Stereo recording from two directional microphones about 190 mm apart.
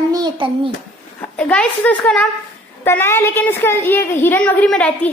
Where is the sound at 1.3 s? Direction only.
5° left (ahead or behind).